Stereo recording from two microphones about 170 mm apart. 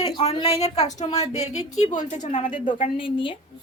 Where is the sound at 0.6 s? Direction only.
40° left (ahead or behind).